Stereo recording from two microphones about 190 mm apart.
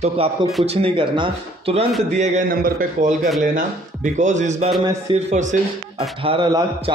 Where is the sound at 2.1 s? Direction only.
40° right (ahead or behind).